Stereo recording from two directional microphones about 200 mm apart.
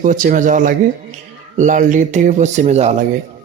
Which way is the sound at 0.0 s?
40° right (ahead or behind).